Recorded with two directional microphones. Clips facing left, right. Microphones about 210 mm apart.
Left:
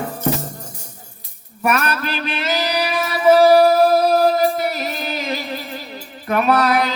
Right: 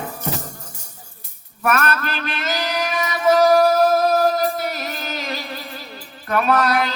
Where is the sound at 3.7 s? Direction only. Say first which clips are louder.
Left 2 dB; 10° left (ahead or behind).